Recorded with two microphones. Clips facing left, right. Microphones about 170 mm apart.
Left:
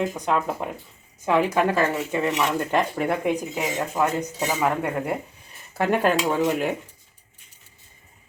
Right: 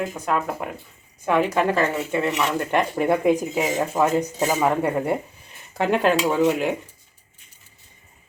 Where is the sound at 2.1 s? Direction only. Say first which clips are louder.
Right 1 dB; 5° right (ahead or behind).